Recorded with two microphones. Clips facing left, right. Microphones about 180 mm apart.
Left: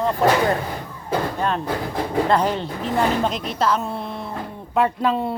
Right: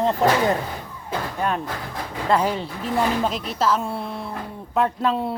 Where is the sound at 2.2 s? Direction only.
5° right (ahead or behind).